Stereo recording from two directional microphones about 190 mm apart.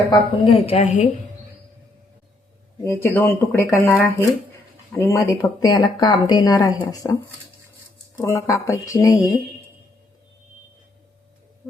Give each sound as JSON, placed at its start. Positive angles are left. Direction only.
{"t": 0.1, "sound": "a woman's voice", "side_deg": 30}
{"t": 2.8, "sound": "speech", "side_deg": 15}
{"t": 8.2, "sound": "speech", "side_deg": 15}